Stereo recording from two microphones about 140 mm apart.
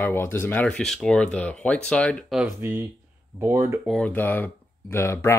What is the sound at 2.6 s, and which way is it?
Speech, 15° right (ahead or behind).